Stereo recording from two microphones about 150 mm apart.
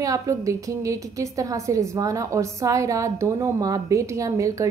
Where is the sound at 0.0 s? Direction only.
20° right (ahead or behind).